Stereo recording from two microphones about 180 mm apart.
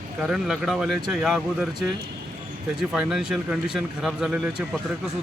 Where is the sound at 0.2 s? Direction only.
Centre (ahead or behind).